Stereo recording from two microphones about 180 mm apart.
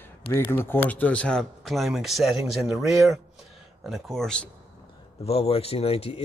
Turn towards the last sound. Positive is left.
turn(degrees=35)  # may be behind; listen again after turning